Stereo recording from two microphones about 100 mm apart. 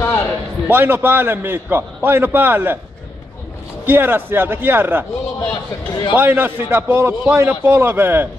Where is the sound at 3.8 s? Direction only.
20° right (ahead or behind).